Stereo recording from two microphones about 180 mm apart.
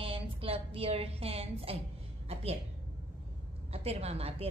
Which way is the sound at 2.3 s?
35° right (ahead or behind).